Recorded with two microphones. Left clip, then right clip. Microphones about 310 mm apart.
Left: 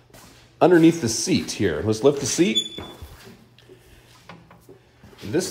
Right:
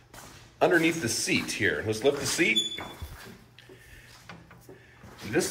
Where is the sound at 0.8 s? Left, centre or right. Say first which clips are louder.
Left 8 dB; centre.